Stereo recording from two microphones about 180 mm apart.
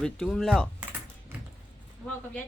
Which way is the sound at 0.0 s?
5° left (ahead or behind).